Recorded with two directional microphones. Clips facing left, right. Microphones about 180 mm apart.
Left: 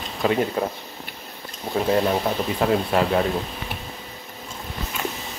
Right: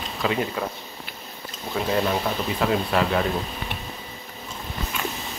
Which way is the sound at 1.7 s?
35° left (ahead or behind).